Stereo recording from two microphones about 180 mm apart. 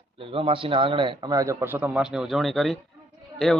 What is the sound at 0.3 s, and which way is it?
A man's voice, 30° right (ahead or behind).